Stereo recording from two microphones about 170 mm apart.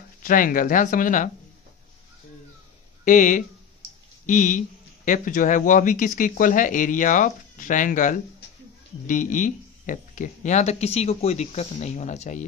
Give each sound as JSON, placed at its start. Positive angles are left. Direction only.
{"t": 0.2, "sound": "speech", "side_deg": 55}
{"t": 3.1, "sound": "speech", "side_deg": 50}